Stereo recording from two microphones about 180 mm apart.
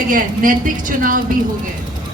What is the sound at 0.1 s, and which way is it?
A woman's voice, 50° right (ahead or behind).